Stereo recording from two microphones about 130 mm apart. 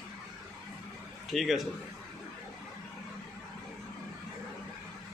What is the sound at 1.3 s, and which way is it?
Speech, centre (ahead or behind).